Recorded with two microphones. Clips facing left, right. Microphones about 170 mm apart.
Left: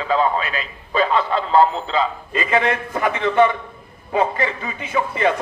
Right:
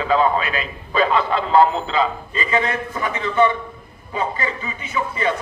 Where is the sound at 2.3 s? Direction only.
55° left (ahead or behind).